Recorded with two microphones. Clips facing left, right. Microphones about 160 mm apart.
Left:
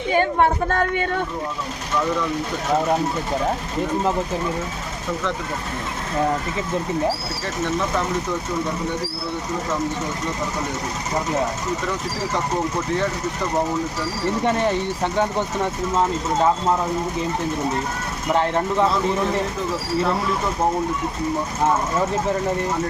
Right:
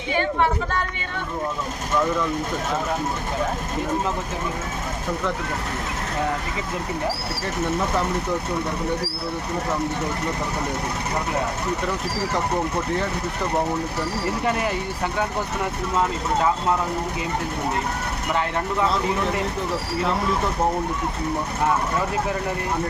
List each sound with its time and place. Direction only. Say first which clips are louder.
0.1 s speech: left 3 dB; 45° left (ahead or behind)
14.4 s speech: left 5 dB; 30° left (ahead or behind)
18.3 s speech: left 5 dB; 30° left (ahead or behind)